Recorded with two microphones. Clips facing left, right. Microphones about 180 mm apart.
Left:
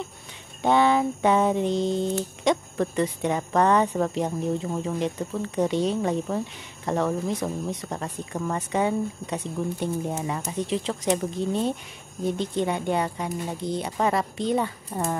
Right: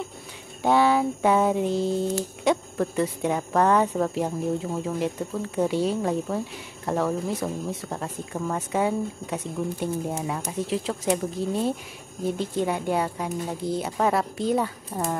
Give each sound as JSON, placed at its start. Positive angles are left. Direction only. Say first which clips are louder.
{"t": 0.6, "sound": "speech", "louder": "even", "side_deg": -5}